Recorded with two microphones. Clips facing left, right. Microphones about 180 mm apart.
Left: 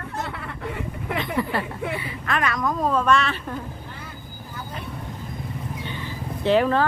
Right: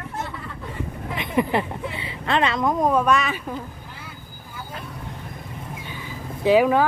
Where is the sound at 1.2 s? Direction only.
20° right (ahead or behind).